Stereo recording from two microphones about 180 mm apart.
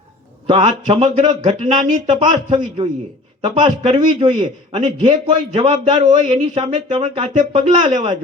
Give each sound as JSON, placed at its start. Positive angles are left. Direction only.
{"t": 0.4, "sound": "a man's voice", "side_deg": -35}